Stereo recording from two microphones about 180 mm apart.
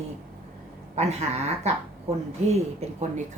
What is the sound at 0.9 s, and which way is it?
Speech, 35° right (ahead or behind).